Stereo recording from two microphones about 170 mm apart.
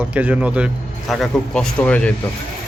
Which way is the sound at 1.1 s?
5° left (ahead or behind).